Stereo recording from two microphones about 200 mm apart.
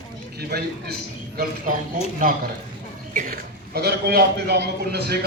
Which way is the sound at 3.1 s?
45° right (ahead or behind).